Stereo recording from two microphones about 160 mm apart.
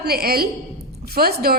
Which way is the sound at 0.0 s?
70° right (ahead or behind).